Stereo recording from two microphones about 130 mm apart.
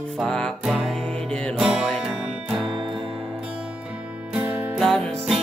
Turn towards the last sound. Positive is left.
turn(degrees=5)  # may be behind; listen again after turning